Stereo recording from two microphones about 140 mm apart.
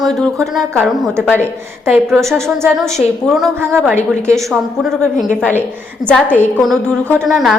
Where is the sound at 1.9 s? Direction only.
Centre (ahead or behind).